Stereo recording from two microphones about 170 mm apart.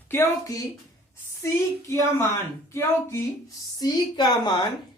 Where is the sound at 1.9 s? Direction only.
15° left (ahead or behind).